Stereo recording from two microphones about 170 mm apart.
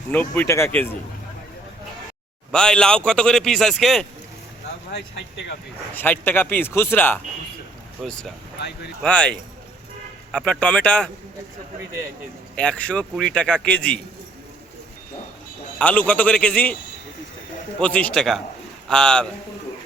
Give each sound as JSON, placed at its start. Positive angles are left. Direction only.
{"t": 0.1, "sound": "a man's voice", "side_deg": 10}
{"t": 2.5, "sound": "speech", "side_deg": 5}
{"t": 4.9, "sound": "speech", "side_deg": 90}
{"t": 5.9, "sound": "a man's voice", "side_deg": 10}
{"t": 8.0, "sound": "a man's voice", "side_deg": 0}
{"t": 12.5, "sound": "a man's voice", "side_deg": 5}
{"t": 15.8, "sound": "a man's voice", "side_deg": 10}
{"t": 17.7, "sound": "speech", "side_deg": 5}